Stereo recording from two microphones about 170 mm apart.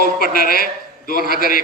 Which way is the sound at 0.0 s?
60° left (ahead or behind).